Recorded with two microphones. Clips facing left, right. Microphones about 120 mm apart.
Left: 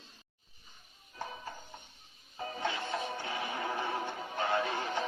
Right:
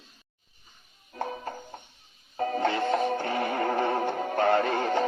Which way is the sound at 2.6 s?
55° right (ahead or behind).